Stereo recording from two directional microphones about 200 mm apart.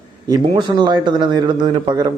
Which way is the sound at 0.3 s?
20° right (ahead or behind).